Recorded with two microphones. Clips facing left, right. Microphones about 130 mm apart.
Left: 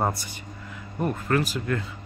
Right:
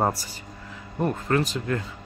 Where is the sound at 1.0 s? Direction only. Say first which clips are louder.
Right 1 dB; 30° right (ahead or behind).